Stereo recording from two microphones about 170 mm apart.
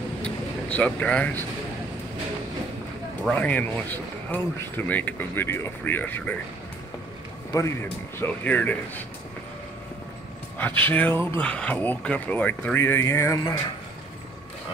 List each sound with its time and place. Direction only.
0.2 s vehicle: 10° left (ahead or behind)
3.3 s speech: 10° left (ahead or behind)
7.5 s speech: 20° left (ahead or behind)
10.6 s speech: 10° left (ahead or behind)